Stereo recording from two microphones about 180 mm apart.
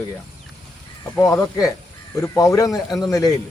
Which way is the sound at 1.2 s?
15° left (ahead or behind).